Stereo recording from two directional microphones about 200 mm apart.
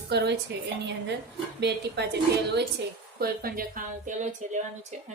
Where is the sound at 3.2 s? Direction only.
45° right (ahead or behind).